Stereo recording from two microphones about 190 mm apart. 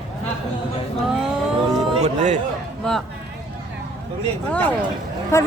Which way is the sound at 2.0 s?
40° right (ahead or behind).